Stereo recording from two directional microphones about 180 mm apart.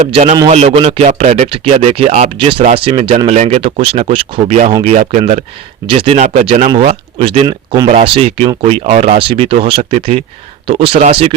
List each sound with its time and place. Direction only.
0.1 s speech: 35° right (ahead or behind)
5.8 s speech: 30° right (ahead or behind)
7.4 s speech: 20° right (ahead or behind)
7.9 s speech: 30° right (ahead or behind)